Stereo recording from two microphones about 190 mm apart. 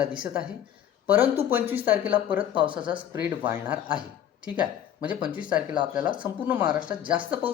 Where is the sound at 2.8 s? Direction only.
25° right (ahead or behind).